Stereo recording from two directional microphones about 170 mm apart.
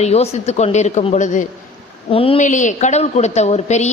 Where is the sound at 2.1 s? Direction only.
35° left (ahead or behind).